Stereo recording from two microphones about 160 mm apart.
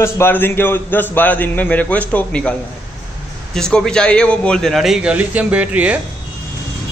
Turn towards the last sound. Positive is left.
turn(degrees=-10)  # may be behind; listen again after turning